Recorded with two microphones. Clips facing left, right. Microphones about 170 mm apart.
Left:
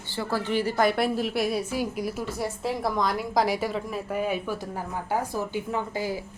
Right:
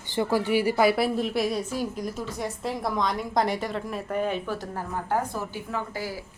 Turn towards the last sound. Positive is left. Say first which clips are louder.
# left 3 dB
turn(degrees=20)  # may be behind; listen again after turning